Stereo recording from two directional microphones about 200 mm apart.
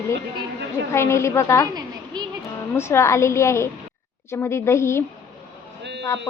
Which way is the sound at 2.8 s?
15° left (ahead or behind).